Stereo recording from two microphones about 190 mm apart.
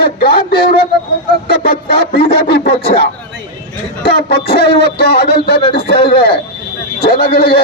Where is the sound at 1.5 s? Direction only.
50° left (ahead or behind).